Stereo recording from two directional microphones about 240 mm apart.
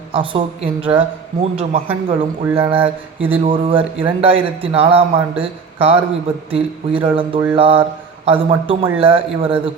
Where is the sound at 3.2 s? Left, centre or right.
Right.